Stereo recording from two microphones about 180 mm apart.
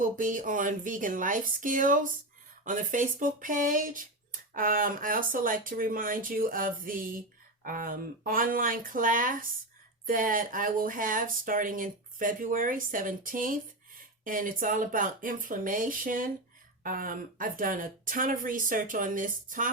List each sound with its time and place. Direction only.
0.0 s speech: 45° right (ahead or behind)